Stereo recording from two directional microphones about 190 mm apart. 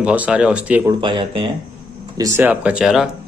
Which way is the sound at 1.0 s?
25° right (ahead or behind).